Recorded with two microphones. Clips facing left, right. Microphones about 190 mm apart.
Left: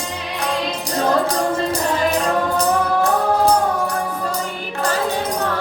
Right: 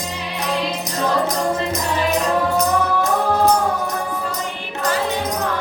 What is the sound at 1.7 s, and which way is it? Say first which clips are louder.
Music: left 1 dB; 30° left (ahead or behind).